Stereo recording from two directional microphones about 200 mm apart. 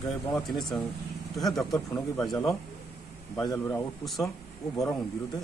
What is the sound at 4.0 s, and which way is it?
Speech, centre (ahead or behind).